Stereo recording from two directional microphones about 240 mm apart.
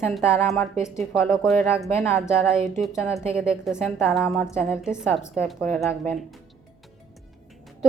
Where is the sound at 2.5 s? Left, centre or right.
Right.